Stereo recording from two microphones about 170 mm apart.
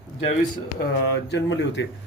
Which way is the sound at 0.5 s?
70° left (ahead or behind).